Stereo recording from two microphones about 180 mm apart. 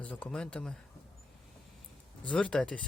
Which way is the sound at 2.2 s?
5° left (ahead or behind).